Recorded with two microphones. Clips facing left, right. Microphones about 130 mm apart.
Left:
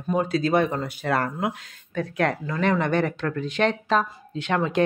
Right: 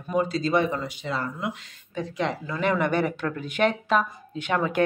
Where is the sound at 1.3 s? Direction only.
50° left (ahead or behind).